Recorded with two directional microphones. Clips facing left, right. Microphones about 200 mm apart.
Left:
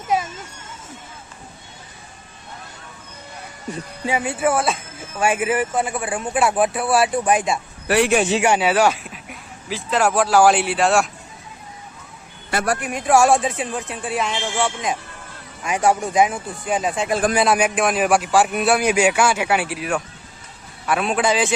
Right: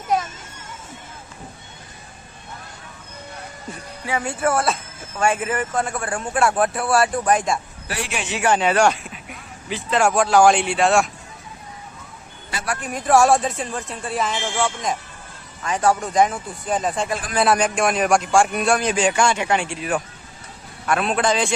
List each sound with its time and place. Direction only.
4.2 s a man's voice: 5° left (ahead or behind)
7.9 s speech: 60° left (ahead or behind)
8.4 s speech: 10° left (ahead or behind)
12.5 s speech: 55° left (ahead or behind)
12.9 s a man's voice: centre (ahead or behind)